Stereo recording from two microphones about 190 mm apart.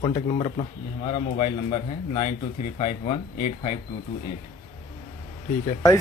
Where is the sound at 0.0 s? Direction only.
30° left (ahead or behind).